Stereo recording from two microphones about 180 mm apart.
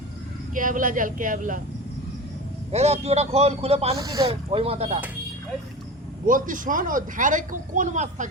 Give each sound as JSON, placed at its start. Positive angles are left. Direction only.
{"t": 0.5, "sound": "speech", "side_deg": -50}
{"t": 2.7, "sound": "a man's voice", "side_deg": -35}
{"t": 3.9, "sound": "speech", "side_deg": -20}
{"t": 4.3, "sound": "a man's voice", "side_deg": -35}
{"t": 6.2, "sound": "speech", "side_deg": -50}